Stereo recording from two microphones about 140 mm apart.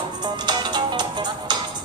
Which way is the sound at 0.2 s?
30° right (ahead or behind).